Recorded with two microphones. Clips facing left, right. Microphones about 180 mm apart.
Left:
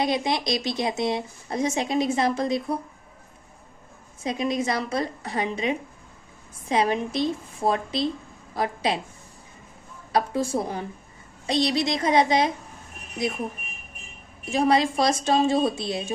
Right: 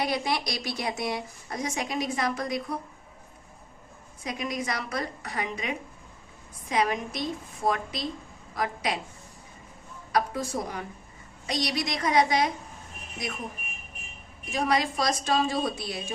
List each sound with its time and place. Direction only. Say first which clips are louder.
0.0 s speech: left 4 dB; 20° left (ahead or behind)
4.2 s speech: left 7 dB; 25° left (ahead or behind)
10.1 s speech: left 4 dB; 30° left (ahead or behind)
14.5 s speech: left 5 dB; 30° left (ahead or behind)